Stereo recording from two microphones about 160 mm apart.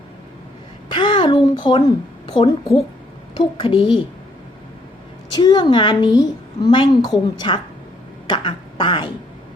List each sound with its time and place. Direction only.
0.9 s a sound: 30° left (ahead or behind)
2.2 s a woman's voice: 30° left (ahead or behind)
5.3 s a woman's voice: 30° left (ahead or behind)